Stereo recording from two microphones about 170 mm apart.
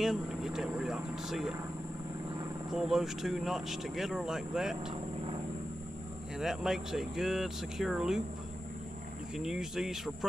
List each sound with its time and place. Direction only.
0.0 s speech: 5° right (ahead or behind)
2.7 s speech: centre (ahead or behind)
6.3 s speech: 5° right (ahead or behind)
9.4 s speech: 5° right (ahead or behind)